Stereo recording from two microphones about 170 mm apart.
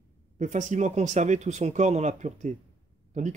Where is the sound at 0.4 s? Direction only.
45° right (ahead or behind).